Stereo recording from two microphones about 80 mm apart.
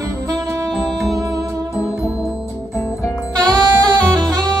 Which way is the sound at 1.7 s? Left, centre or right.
Left.